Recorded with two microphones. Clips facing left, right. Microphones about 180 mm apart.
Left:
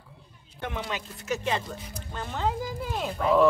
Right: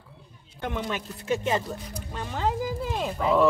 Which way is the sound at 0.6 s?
45° right (ahead or behind).